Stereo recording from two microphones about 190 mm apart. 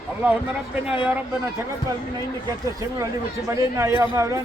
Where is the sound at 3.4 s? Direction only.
15° right (ahead or behind).